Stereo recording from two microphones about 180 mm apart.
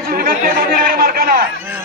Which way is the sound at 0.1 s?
55° right (ahead or behind).